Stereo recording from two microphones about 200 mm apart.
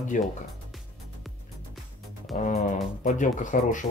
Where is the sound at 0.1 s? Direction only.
40° left (ahead or behind).